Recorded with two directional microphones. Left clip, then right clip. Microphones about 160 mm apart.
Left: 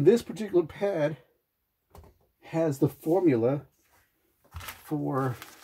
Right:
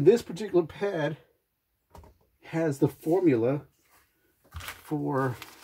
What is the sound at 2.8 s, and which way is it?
Speech, 25° left (ahead or behind).